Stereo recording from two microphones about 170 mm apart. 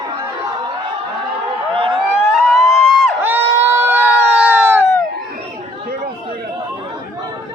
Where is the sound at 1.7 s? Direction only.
30° right (ahead or behind).